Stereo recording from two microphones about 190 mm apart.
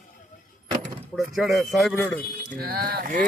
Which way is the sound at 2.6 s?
50° right (ahead or behind).